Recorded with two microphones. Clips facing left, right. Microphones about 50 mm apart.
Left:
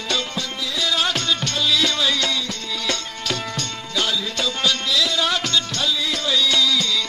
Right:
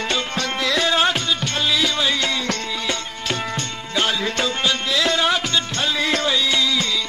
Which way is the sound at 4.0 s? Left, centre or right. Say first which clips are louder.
Right 3 dB; right.